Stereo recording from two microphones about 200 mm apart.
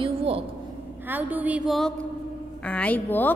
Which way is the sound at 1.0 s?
10° right (ahead or behind).